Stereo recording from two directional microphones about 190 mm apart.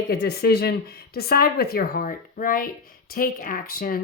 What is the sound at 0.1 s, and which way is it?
Speech, 60° left (ahead or behind).